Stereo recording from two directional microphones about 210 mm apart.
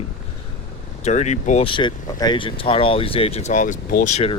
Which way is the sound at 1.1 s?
30° left (ahead or behind).